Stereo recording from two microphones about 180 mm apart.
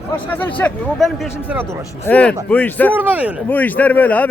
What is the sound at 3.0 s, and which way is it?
Speech, 10° right (ahead or behind).